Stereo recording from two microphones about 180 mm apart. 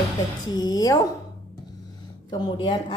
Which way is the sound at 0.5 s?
20° left (ahead or behind).